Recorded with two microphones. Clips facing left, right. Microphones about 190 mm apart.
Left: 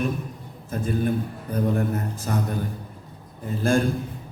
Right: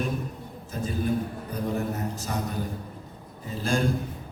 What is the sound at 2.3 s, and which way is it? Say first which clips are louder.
Speech: left 6 dB; 50° left (ahead or behind).